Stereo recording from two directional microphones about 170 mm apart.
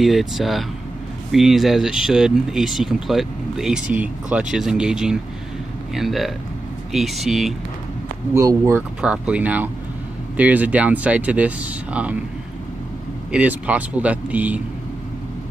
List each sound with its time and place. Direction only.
0.0 s speech: centre (ahead or behind)
8.4 s speech: 20° right (ahead or behind)
9.0 s speech: 5° right (ahead or behind)
13.3 s speech: 10° right (ahead or behind)